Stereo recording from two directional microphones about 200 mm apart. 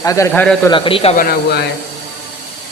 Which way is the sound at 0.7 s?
25° left (ahead or behind).